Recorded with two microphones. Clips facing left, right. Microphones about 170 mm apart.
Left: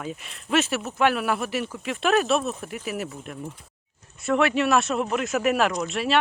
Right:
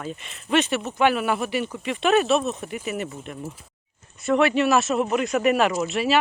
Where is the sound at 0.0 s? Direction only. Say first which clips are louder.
Right 1 dB; centre (ahead or behind).